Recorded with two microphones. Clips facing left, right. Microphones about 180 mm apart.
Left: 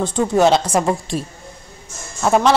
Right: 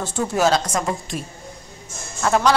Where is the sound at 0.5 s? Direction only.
30° left (ahead or behind).